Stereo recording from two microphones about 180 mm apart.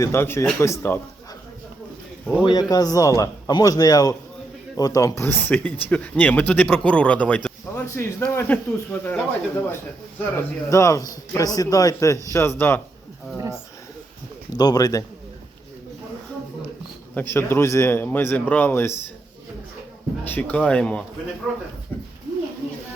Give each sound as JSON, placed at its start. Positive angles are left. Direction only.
{"t": 0.0, "sound": "a man's voice", "side_deg": 15}
{"t": 2.4, "sound": "a man's voice", "side_deg": 25}
{"t": 14.5, "sound": "a man's voice", "side_deg": 20}
{"t": 17.2, "sound": "a man's voice", "side_deg": 10}
{"t": 20.2, "sound": "a man's voice", "side_deg": 10}